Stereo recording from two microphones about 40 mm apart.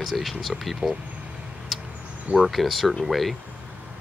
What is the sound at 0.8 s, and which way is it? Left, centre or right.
Speech, centre.